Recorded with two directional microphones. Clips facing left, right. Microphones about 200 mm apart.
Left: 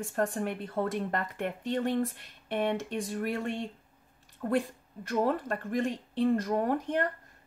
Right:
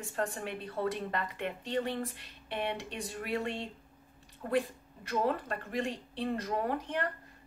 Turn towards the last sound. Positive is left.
turn(degrees=45)  # may be behind; listen again after turning